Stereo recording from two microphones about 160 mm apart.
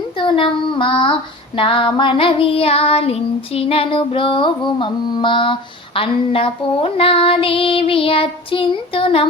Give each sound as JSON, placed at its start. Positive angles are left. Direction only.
{"t": 0.2, "sound": "child singing", "side_deg": 30}